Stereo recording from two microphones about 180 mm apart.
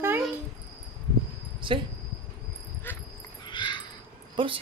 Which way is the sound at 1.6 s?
25° right (ahead or behind).